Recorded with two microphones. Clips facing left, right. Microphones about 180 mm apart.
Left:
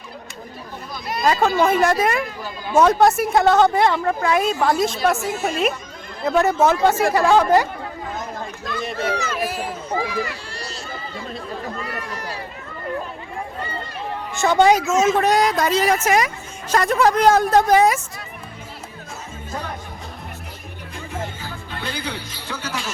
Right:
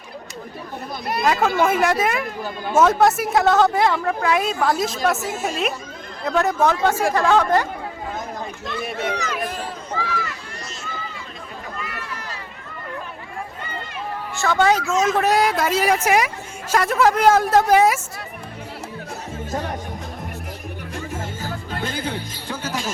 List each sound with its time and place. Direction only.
1.2 s speech: 5° right (ahead or behind)
2.2 s speech: 50° right (ahead or behind)
2.7 s speech: 5° right (ahead or behind)
8.8 s speech: 5° right (ahead or behind)
9.1 s speech: 15° right (ahead or behind)
9.4 s speech: 10° left (ahead or behind)
11.8 s a sound: 35° left (ahead or behind)
14.3 s speech: 20° left (ahead or behind)
15.0 s speech: 5° right (ahead or behind)
19.5 s music: 45° right (ahead or behind)
20.9 s music: 45° right (ahead or behind)